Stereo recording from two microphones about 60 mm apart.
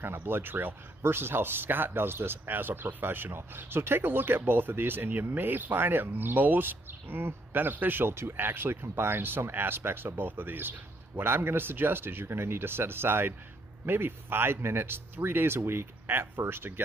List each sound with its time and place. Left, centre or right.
0.0 s speech: right